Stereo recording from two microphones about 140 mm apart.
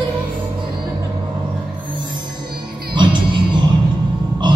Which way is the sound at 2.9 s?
35° right (ahead or behind).